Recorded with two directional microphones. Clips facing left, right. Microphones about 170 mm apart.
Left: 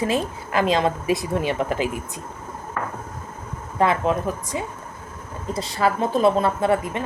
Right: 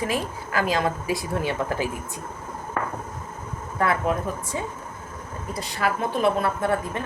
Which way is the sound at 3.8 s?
20° left (ahead or behind).